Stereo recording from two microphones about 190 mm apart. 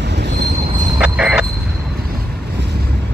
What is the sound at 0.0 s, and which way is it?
Train wheels squealing, 65° right (ahead or behind).